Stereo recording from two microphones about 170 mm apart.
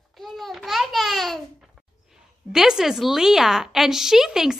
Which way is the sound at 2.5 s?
5° right (ahead or behind).